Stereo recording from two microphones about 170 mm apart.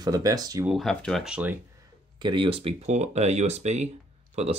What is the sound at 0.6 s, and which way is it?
Speech, centre (ahead or behind).